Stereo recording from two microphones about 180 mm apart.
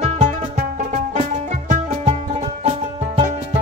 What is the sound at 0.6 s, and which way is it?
Music, 40° right (ahead or behind).